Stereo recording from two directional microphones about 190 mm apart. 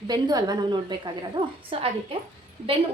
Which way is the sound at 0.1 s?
20° right (ahead or behind).